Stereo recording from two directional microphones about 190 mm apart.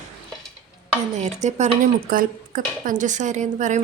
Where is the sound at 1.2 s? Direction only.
35° right (ahead or behind).